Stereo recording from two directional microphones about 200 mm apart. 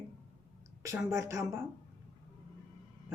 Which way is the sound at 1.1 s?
15° right (ahead or behind).